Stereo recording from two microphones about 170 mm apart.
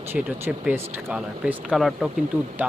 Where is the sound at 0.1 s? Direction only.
10° right (ahead or behind).